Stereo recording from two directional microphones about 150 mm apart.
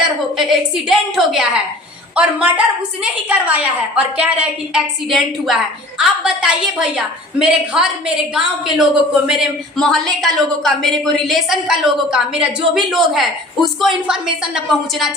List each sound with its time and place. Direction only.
0.3 s a woman's voice: 5° right (ahead or behind)